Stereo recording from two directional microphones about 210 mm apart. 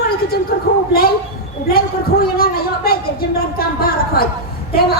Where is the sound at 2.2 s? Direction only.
45° left (ahead or behind).